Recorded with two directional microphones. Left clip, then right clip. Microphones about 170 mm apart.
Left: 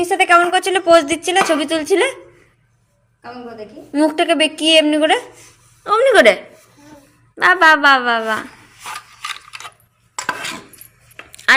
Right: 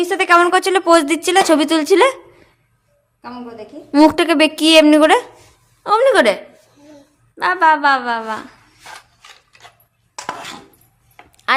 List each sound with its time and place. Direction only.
0.0 s speech: 25° right (ahead or behind)
3.9 s speech: 35° right (ahead or behind)
5.8 s speech: 20° right (ahead or behind)
6.1 s a woman's voice: 5° right (ahead or behind)
7.3 s a woman's voice: 10° left (ahead or behind)